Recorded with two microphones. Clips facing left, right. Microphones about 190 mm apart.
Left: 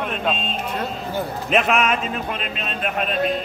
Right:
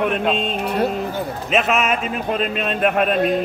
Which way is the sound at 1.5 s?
Centre (ahead or behind).